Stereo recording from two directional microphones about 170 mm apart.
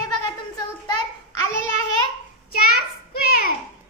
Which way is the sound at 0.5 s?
25° left (ahead or behind).